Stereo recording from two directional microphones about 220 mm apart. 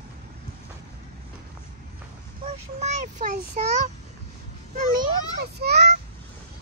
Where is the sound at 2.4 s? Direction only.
30° right (ahead or behind).